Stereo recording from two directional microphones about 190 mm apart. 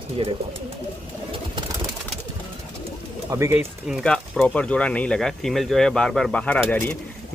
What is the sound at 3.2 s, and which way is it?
Speech, 15° right (ahead or behind).